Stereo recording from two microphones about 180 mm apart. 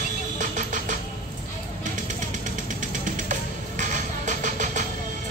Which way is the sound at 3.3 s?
45° right (ahead or behind).